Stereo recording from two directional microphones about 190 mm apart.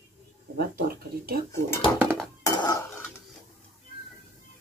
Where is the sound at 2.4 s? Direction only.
20° left (ahead or behind).